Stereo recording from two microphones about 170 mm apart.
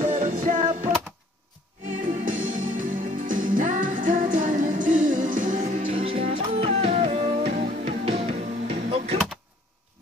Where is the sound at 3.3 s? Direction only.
50° right (ahead or behind).